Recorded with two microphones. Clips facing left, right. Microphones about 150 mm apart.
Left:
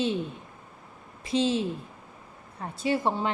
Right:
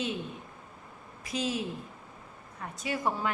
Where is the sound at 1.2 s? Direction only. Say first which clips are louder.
Left 7 dB; 25° left (ahead or behind).